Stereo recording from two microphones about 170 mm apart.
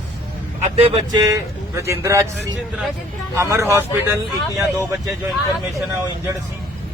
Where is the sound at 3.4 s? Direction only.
15° right (ahead or behind).